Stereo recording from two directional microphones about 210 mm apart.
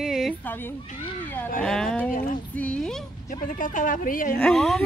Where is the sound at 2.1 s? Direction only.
40° left (ahead or behind).